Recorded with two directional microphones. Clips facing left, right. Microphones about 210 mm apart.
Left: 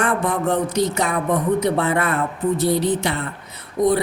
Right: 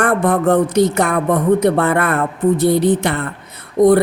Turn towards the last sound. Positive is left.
turn(degrees=-55)  # may be behind; listen again after turning